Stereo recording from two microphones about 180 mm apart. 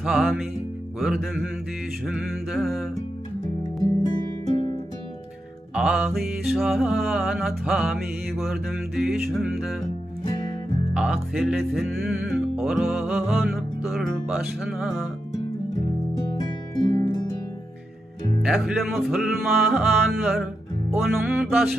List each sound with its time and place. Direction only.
0.0 s music: centre (ahead or behind)
3.8 s music: 25° left (ahead or behind)
5.8 s music: 5° right (ahead or behind)
10.9 s music: 5° right (ahead or behind)
16.3 s music: 25° left (ahead or behind)
18.4 s music: centre (ahead or behind)